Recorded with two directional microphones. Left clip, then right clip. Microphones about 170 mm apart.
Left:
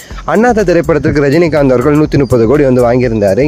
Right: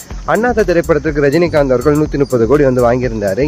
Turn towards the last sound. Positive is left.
turn(degrees=45)  # may be behind; listen again after turning